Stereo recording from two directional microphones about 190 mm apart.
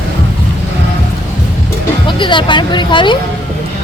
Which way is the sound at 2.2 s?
25° left (ahead or behind).